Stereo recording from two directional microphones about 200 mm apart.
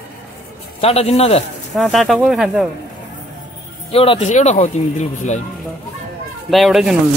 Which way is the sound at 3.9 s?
30° left (ahead or behind).